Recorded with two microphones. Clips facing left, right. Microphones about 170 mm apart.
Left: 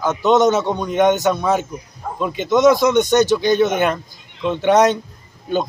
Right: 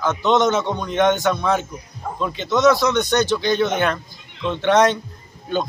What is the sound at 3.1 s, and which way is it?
Speech, 45° left (ahead or behind).